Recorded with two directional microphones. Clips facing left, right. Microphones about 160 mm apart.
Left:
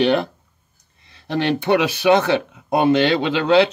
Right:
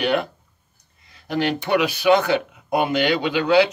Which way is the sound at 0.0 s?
30° left (ahead or behind).